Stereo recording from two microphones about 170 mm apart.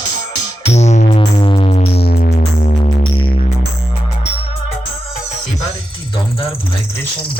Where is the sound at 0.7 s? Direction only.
40° left (ahead or behind).